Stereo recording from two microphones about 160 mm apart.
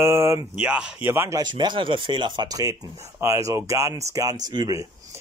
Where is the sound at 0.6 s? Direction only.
5° right (ahead or behind).